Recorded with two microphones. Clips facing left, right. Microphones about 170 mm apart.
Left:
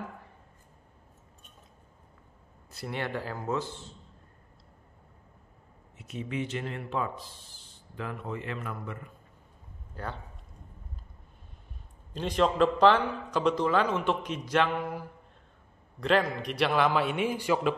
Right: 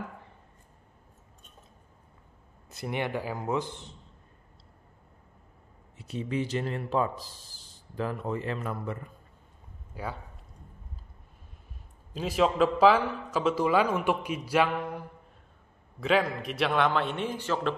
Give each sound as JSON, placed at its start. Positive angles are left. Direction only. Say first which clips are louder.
{"t": 2.7, "sound": "a man's voice", "louder": "right 2 dB", "side_deg": -20}
{"t": 5.9, "sound": "speech", "louder": "right 3 dB", "side_deg": -35}
{"t": 9.9, "sound": "a man's voice", "louder": "right 1 dB", "side_deg": -5}
{"t": 12.1, "sound": "a man's voice", "louder": "right 1 dB", "side_deg": -5}